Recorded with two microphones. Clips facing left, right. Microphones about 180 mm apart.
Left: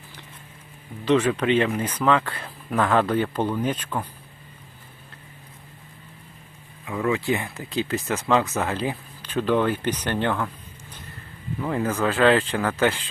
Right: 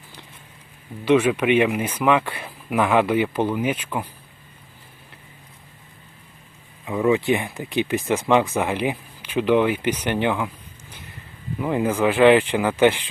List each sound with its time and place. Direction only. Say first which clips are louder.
1.0 s speech: right 3 dB; 10° right (ahead or behind)
6.8 s speech: right 5 dB; 20° right (ahead or behind)
11.6 s speech: right 4 dB; 15° right (ahead or behind)